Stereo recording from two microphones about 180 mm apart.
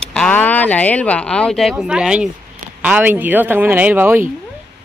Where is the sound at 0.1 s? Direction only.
5° left (ahead or behind).